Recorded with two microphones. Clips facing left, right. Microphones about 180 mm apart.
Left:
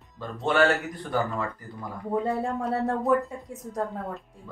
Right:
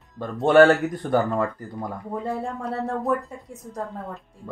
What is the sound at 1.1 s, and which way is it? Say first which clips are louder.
Speech: right 5 dB; 45° right (ahead or behind).